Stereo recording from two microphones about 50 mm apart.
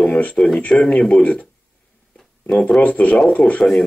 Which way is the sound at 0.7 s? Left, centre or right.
Centre.